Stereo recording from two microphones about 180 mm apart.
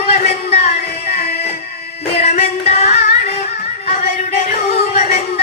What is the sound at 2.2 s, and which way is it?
Music, 40° left (ahead or behind).